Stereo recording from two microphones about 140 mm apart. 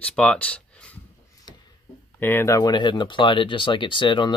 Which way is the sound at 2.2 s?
15° left (ahead or behind).